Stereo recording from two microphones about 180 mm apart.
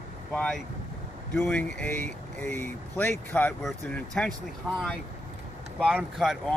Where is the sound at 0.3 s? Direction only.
5° left (ahead or behind).